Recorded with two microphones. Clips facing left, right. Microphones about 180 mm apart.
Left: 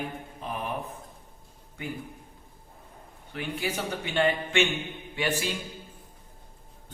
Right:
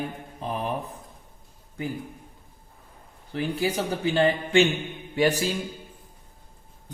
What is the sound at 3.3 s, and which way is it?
A man's voice, 35° right (ahead or behind).